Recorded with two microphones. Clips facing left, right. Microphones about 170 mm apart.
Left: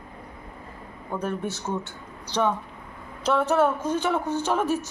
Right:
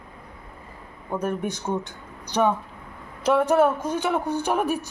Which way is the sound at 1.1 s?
10° right (ahead or behind).